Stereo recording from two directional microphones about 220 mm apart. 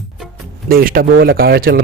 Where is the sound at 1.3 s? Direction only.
45° right (ahead or behind).